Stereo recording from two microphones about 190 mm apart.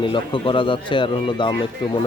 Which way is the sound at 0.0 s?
25° left (ahead or behind).